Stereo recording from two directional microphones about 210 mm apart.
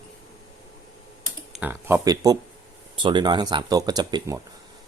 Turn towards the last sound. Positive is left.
turn(degrees=-15)  # may be behind; listen again after turning